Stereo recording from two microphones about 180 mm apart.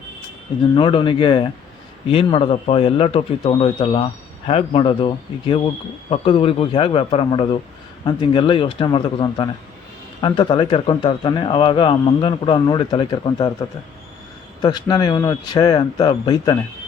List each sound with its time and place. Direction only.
0.8 s speech: 30° left (ahead or behind)